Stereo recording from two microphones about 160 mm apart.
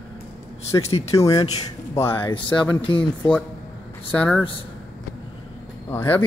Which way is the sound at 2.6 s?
30° left (ahead or behind).